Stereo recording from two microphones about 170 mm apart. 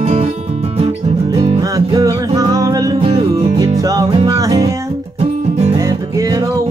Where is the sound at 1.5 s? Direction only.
20° right (ahead or behind).